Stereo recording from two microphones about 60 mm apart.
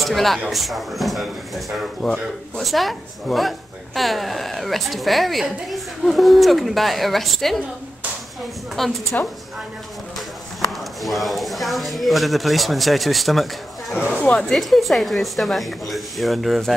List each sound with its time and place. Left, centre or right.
0.0 s speech: centre
8.8 s speech: centre
9.1 s a woman's voice: left
11.0 s speech: centre
14.1 s speech: centre
14.4 s speech: centre